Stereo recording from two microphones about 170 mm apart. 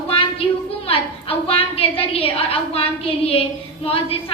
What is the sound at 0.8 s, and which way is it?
A woman's voice, 35° left (ahead or behind).